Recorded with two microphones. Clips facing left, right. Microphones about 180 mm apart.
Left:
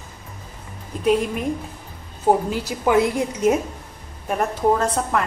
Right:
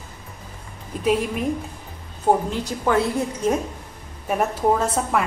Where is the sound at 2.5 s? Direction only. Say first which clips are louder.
Left 2 dB; 10° left (ahead or behind).